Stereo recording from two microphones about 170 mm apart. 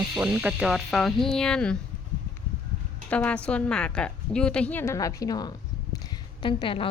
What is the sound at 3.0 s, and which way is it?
A woman's voice, 10° left (ahead or behind).